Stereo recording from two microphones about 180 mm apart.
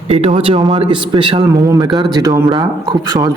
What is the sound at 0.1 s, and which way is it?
Speech, 35° right (ahead or behind).